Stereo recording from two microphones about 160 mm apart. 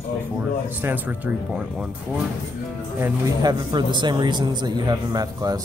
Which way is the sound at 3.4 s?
30° right (ahead or behind).